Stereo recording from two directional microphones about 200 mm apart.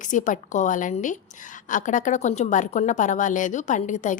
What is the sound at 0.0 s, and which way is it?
A woman's voice, 40° left (ahead or behind).